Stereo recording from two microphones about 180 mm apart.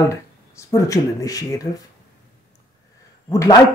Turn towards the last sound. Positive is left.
turn(degrees=15)  # may be behind; listen again after turning